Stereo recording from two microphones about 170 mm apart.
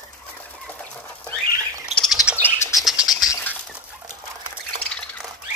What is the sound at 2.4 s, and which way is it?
Bird, 15° left (ahead or behind).